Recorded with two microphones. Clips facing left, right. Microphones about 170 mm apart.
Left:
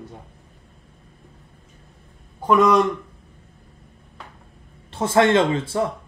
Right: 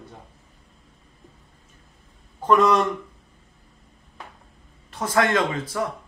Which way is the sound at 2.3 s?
5° left (ahead or behind).